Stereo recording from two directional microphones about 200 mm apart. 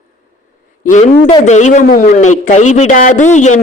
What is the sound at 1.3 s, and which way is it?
A man's voice, 35° left (ahead or behind).